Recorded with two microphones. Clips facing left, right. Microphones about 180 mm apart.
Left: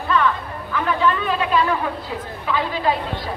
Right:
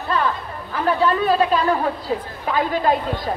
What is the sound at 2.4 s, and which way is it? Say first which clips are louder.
Speech: right 1 dB; 45° right (ahead or behind).